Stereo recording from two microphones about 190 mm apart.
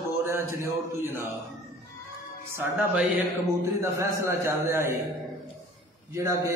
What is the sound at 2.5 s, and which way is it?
A man's voice, 10° right (ahead or behind).